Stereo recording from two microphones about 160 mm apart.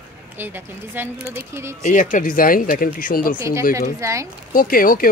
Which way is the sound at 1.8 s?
55° left (ahead or behind).